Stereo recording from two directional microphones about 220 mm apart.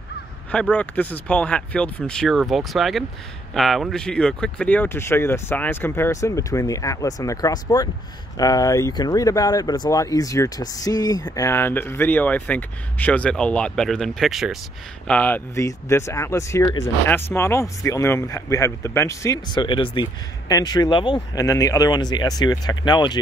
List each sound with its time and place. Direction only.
0.5 s speech: 5° left (ahead or behind)